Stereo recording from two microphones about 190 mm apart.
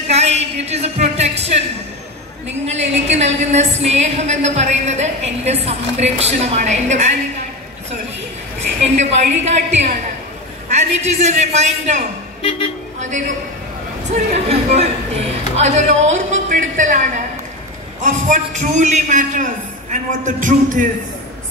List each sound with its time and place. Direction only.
0.1 s a woman's voice: 35° right (ahead or behind)
8.8 s a woman's voice: 35° right (ahead or behind)
12.4 s speech: 25° left (ahead or behind)
14.5 s a woman's voice: 35° right (ahead or behind)
18.0 s a woman's voice: 40° right (ahead or behind)